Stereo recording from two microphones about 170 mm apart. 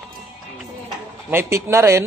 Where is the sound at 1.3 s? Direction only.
15° right (ahead or behind).